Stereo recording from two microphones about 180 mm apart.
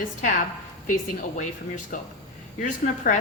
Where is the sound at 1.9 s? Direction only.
45° left (ahead or behind).